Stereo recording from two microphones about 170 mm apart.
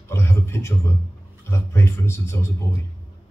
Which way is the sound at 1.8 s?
15° left (ahead or behind).